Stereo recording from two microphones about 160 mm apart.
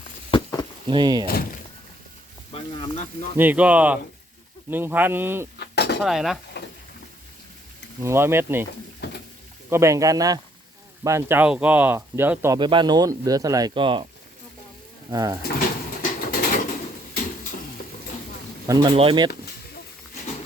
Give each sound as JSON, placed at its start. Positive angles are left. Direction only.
{"t": 0.3, "sound": "a sound", "side_deg": 25}
{"t": 0.9, "sound": "speech", "side_deg": -25}
{"t": 1.3, "sound": "speech", "side_deg": 65}
{"t": 2.5, "sound": "speech", "side_deg": 35}
{"t": 3.3, "sound": "speech", "side_deg": -10}
{"t": 5.5, "sound": "cutlery", "side_deg": 90}
{"t": 6.0, "sound": "speech", "side_deg": 0}
{"t": 8.0, "sound": "speech", "side_deg": -15}
{"t": 9.6, "sound": "speech", "side_deg": -15}
{"t": 12.5, "sound": "speech", "side_deg": -30}
{"t": 15.1, "sound": "speech", "side_deg": -20}
{"t": 16.0, "sound": "a sound", "side_deg": 60}
{"t": 18.7, "sound": "speech", "side_deg": -25}